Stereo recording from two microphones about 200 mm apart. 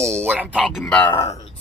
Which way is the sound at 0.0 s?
10° right (ahead or behind).